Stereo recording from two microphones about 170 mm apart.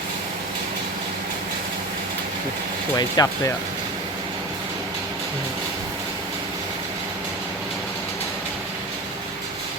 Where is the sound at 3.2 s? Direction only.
25° left (ahead or behind).